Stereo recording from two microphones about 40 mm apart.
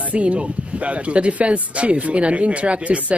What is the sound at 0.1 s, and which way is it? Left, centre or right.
Speech, right.